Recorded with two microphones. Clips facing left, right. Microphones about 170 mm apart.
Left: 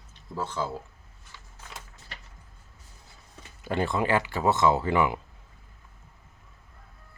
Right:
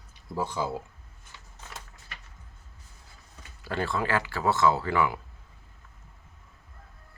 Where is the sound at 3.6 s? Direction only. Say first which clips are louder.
Left 3 dB; 20° left (ahead or behind).